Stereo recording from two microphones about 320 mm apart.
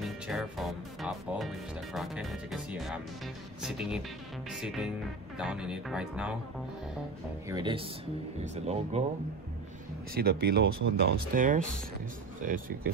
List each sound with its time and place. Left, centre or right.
0.0 s music: centre
3.6 s speech: centre
7.4 s speech: centre
10.1 s speech: right